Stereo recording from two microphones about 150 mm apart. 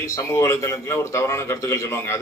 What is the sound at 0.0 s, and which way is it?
A man's voice, 20° left (ahead or behind).